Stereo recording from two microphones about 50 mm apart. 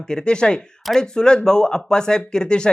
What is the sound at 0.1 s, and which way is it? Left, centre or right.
Speech, centre.